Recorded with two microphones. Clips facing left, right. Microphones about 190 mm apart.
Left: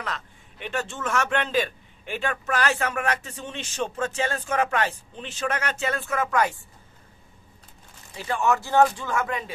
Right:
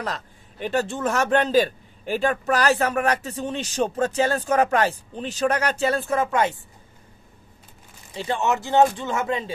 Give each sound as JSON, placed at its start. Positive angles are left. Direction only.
{"t": 0.0, "sound": "a man's voice", "side_deg": -40}
{"t": 8.1, "sound": "speech", "side_deg": -25}